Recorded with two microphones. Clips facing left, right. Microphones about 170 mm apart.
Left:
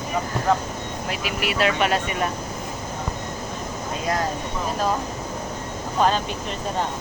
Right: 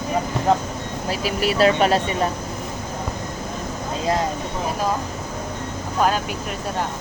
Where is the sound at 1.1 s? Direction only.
35° right (ahead or behind).